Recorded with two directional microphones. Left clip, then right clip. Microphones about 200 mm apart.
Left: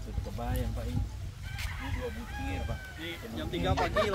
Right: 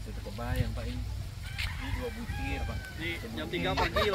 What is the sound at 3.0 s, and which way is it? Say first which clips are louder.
Speech: right 3 dB; 60° left (ahead or behind).